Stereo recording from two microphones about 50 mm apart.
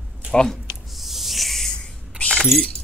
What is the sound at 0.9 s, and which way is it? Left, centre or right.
Snake, centre.